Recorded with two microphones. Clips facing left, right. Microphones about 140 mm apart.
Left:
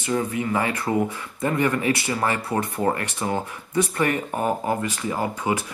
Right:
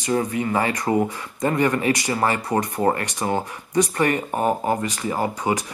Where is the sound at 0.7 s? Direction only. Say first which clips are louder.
Right 2 dB; 15° right (ahead or behind).